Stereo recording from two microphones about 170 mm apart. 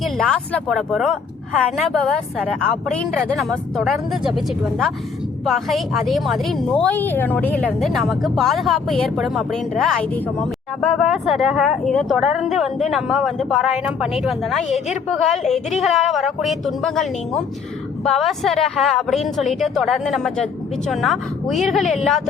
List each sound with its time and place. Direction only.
0.0 s speech: 5° left (ahead or behind)